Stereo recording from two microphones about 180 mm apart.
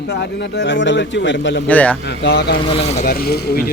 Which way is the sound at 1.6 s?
5° left (ahead or behind).